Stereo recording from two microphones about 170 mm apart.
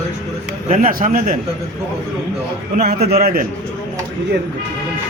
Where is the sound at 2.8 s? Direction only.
70° right (ahead or behind).